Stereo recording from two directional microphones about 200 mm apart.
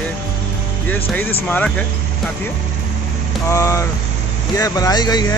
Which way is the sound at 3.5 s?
15° left (ahead or behind).